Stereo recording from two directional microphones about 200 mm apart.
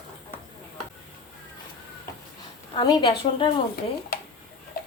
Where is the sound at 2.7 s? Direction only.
20° left (ahead or behind).